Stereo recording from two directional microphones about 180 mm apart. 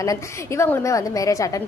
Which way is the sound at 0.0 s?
15° left (ahead or behind).